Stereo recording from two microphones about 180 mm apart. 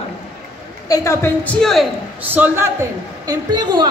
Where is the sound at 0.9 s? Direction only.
15° left (ahead or behind).